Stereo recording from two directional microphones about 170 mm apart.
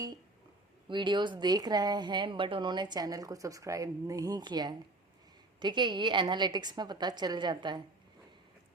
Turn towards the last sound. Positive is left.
turn(degrees=-25)  # may be behind; listen again after turning